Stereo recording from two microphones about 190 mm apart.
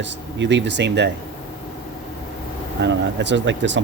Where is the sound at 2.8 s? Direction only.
70° right (ahead or behind).